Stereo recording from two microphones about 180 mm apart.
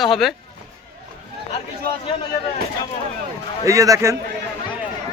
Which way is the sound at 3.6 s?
20° right (ahead or behind).